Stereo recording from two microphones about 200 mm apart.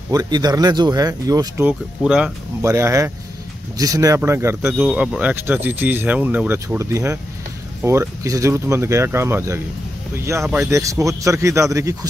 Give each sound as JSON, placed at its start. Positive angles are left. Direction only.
{"t": 0.1, "sound": "speech", "side_deg": -20}
{"t": 2.0, "sound": "speech", "side_deg": -5}